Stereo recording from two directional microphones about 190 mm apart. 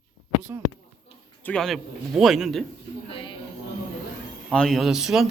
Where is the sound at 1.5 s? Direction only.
Centre (ahead or behind).